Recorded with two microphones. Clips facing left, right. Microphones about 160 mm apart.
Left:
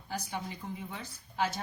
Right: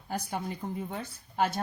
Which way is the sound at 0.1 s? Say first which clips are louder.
Right 4 dB; 50° right (ahead or behind).